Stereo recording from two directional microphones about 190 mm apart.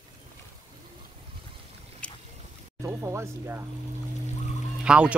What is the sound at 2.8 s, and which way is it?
Speech, 15° right (ahead or behind).